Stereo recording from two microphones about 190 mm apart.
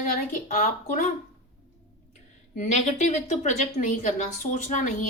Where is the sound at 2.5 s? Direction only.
40° left (ahead or behind).